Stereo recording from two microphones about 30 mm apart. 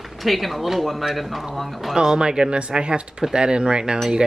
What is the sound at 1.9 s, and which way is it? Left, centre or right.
Speech, right.